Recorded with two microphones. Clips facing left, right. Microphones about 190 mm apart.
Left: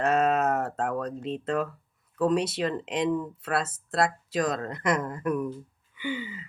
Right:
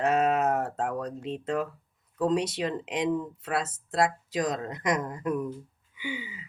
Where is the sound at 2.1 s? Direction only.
15° right (ahead or behind).